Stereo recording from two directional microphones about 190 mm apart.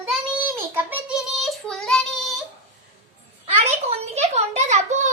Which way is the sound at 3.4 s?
30° right (ahead or behind).